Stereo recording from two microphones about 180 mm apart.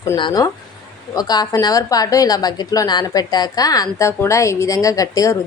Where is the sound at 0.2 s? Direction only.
25° left (ahead or behind).